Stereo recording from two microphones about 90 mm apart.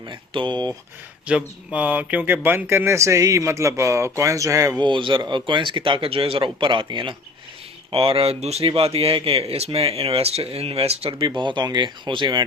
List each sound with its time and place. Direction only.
0.1 s speech: 60° right (ahead or behind)
1.3 s speech: 15° right (ahead or behind); by 4.8 s 35° right (ahead or behind)
4.8 s speech: 65° right (ahead or behind)
7.9 s speech: 90° right
11.3 s speech: 55° right (ahead or behind)